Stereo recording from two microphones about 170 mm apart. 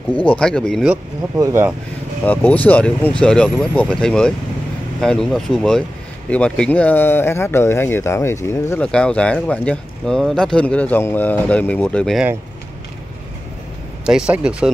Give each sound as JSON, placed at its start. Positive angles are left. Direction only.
{"t": 0.3, "sound": "speech", "side_deg": 5}
{"t": 1.3, "sound": "speech", "side_deg": -15}
{"t": 2.2, "sound": "speech", "side_deg": 10}
{"t": 14.0, "sound": "speech", "side_deg": -5}